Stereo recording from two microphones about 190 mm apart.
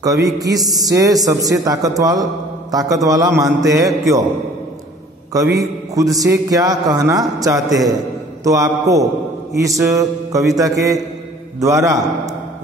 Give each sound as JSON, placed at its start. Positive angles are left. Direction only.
{"t": 0.0, "sound": "a man's voice", "side_deg": -20}
{"t": 5.3, "sound": "a man's voice", "side_deg": -20}